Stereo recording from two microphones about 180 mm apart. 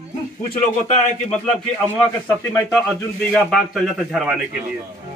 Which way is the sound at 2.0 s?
10° left (ahead or behind).